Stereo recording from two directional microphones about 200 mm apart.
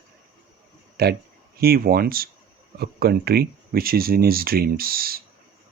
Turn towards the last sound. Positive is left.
turn(degrees=-50)  # may be behind; listen again after turning